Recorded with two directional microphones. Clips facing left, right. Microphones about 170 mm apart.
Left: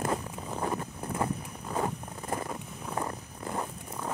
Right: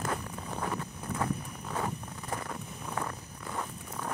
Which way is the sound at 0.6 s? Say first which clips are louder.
Left 4 dB; 20° left (ahead or behind).